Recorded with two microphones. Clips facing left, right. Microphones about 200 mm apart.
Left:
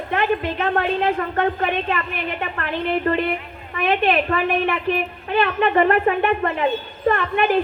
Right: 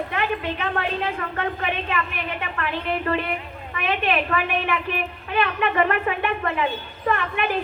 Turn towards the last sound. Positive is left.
turn(degrees=40)  # may be behind; listen again after turning